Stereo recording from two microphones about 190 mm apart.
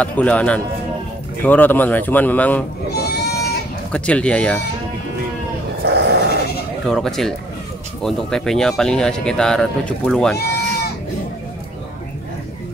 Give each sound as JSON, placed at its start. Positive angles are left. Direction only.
{"t": 0.0, "sound": "speech", "side_deg": 5}
{"t": 2.9, "sound": "goat", "side_deg": 55}
{"t": 3.9, "sound": "speech", "side_deg": 5}
{"t": 5.9, "sound": "dog", "side_deg": -60}
{"t": 6.9, "sound": "speech", "side_deg": 0}